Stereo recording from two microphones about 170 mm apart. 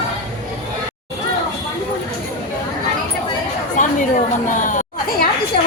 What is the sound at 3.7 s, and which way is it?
Chatter, 50° left (ahead or behind).